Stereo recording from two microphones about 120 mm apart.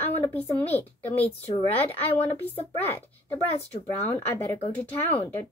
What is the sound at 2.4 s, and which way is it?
Speech, 15° left (ahead or behind).